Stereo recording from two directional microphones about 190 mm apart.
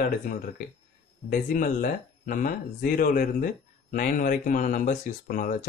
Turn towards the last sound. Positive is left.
turn(degrees=45)  # may be behind; listen again after turning